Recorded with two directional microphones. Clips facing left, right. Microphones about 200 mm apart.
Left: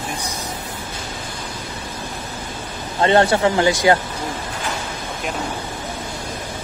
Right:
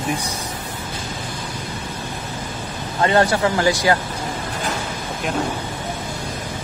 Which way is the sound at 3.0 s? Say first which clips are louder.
Left 2 dB; 25° left (ahead or behind).